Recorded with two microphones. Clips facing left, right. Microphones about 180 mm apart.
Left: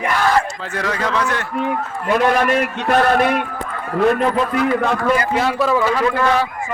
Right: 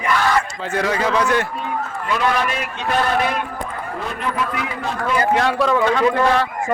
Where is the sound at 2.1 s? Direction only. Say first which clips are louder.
Left 5 dB; 50° left (ahead or behind).